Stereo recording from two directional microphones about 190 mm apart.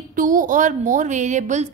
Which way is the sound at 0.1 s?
45° right (ahead or behind).